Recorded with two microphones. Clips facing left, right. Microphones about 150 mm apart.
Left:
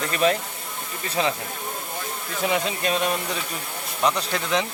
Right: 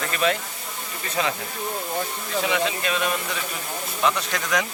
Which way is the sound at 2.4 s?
45° left (ahead or behind).